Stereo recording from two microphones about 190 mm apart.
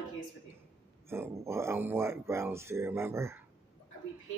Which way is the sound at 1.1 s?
15° right (ahead or behind).